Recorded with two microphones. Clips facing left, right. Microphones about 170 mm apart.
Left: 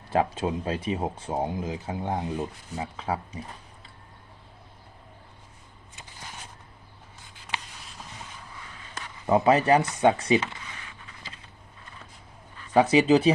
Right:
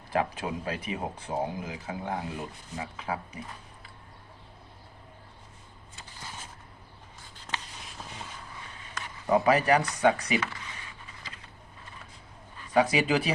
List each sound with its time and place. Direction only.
0.1 s speech: 25° left (ahead or behind)
7.5 s a sound: 15° left (ahead or behind)
9.2 s speech: 20° left (ahead or behind)
12.7 s speech: 25° left (ahead or behind)